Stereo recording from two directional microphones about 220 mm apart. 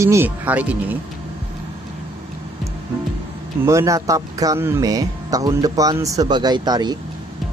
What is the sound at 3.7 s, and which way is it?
Speech, 15° right (ahead or behind).